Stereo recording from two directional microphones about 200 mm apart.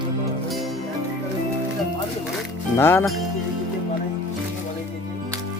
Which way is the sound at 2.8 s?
10° left (ahead or behind).